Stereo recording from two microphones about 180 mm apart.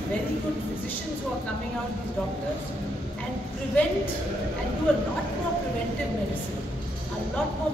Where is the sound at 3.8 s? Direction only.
10° left (ahead or behind).